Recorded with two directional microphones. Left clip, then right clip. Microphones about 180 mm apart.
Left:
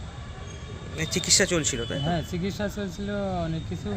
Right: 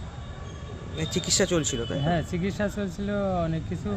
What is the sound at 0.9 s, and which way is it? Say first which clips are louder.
Speech: left 3 dB; 5° right (ahead or behind).